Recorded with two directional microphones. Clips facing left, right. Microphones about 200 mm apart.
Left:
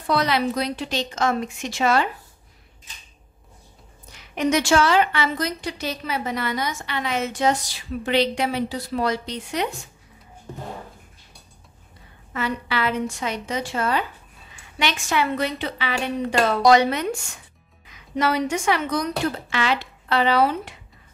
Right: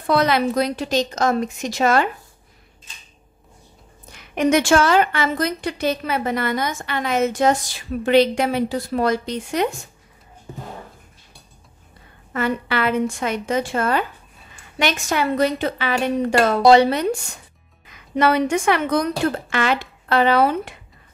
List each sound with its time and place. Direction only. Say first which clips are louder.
0.0 s a woman's voice: right 4 dB; 50° right (ahead or behind)
4.1 s a woman's voice: right 4 dB; 55° right (ahead or behind)
10.5 s speech: even; 5° right (ahead or behind)
12.3 s a woman's voice: right 4 dB; 50° right (ahead or behind)
16.6 s speech: right 4 dB; 30° right (ahead or behind)
17.8 s a woman's voice: right 5 dB; 55° right (ahead or behind)